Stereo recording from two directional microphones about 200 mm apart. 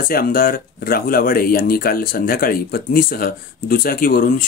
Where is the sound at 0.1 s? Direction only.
45° left (ahead or behind).